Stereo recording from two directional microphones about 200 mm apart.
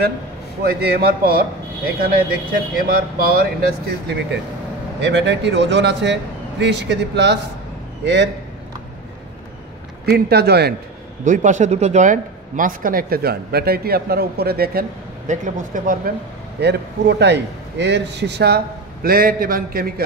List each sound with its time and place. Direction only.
0.6 s speech: 50° right (ahead or behind)
5.0 s a man's voice: 60° right (ahead or behind)
10.0 s speech: 55° right (ahead or behind)
11.2 s speech: 40° right (ahead or behind)
16.5 s a man's voice: 55° right (ahead or behind)
19.0 s speech: 45° right (ahead or behind)